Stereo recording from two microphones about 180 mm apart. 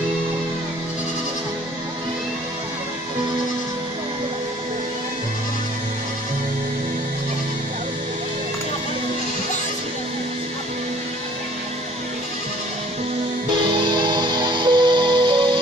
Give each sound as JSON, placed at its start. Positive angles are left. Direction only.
{"t": 13.7, "sound": "music", "side_deg": -25}